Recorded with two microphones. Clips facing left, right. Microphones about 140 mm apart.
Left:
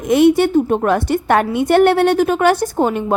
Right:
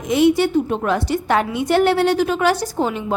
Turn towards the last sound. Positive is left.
turn(degrees=50)  # may be behind; listen again after turning